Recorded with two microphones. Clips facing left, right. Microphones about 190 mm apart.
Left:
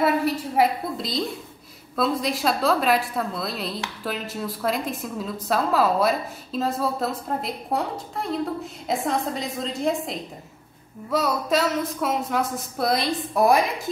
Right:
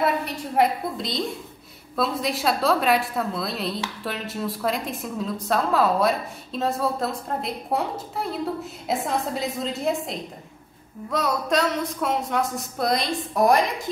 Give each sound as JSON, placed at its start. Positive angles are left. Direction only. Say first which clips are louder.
{"t": 0.0, "sound": "a woman's voice", "louder": "left 3 dB", "side_deg": 0}